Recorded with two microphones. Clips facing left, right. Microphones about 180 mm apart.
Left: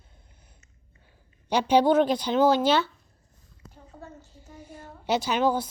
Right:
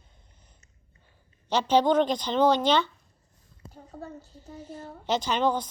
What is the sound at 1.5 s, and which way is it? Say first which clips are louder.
Speech: left 2 dB; 10° left (ahead or behind).